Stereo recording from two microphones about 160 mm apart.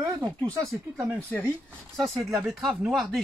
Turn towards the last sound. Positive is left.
turn(degrees=0)  # may be behind; listen again after turning